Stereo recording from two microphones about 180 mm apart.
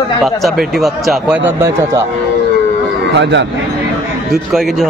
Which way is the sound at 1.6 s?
15° right (ahead or behind).